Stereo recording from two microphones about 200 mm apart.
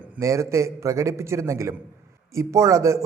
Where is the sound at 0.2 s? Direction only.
15° right (ahead or behind).